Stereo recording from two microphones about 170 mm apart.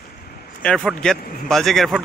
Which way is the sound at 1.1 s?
65° left (ahead or behind).